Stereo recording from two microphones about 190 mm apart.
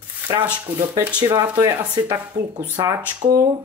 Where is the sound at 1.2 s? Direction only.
20° right (ahead or behind).